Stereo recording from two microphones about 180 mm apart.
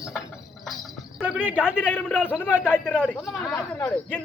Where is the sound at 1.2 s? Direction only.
10° right (ahead or behind).